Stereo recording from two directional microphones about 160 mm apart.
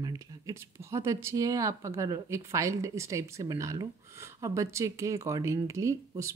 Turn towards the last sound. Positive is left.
turn(degrees=-20)  # may be behind; listen again after turning